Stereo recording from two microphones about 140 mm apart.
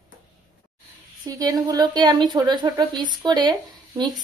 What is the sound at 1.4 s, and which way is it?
A woman's voice, 25° right (ahead or behind).